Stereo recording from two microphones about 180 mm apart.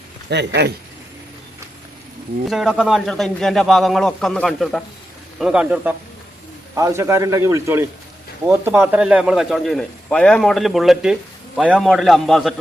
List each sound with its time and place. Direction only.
0.3 s a man's voice: 70° right (ahead or behind)
2.5 s a man's voice: centre (ahead or behind)
6.7 s a man's voice: 15° right (ahead or behind); by 12.5 s centre (ahead or behind)